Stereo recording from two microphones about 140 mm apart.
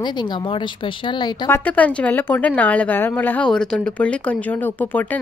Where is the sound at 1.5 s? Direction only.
10° left (ahead or behind).